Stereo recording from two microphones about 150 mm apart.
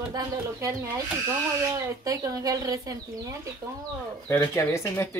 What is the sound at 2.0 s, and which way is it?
Speech, 25° right (ahead or behind).